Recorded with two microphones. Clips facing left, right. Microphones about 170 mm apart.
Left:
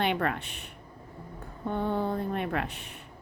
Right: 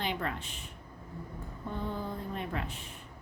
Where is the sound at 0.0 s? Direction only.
65° left (ahead or behind).